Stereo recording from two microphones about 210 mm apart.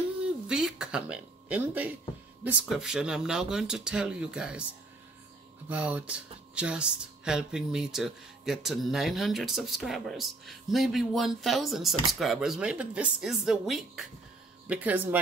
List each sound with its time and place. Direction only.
0.2 s a sound: 5° right (ahead or behind)
2.4 s speech: 5° right (ahead or behind)
5.7 s speech: 5° right (ahead or behind)